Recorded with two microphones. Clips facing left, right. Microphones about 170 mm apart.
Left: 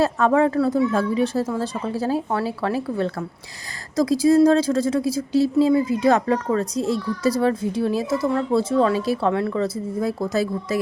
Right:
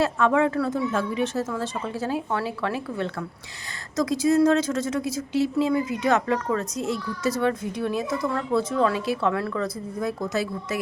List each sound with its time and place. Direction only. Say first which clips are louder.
0.0 s speech: left 3 dB; 35° left (ahead or behind)